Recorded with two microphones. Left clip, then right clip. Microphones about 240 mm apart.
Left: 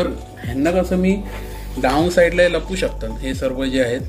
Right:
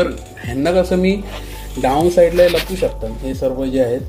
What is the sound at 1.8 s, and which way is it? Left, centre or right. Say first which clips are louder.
Speech: right 2 dB; centre.